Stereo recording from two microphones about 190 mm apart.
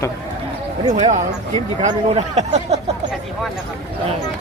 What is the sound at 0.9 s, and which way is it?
Speech, 40° right (ahead or behind).